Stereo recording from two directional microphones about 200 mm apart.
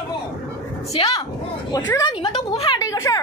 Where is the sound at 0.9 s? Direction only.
30° left (ahead or behind).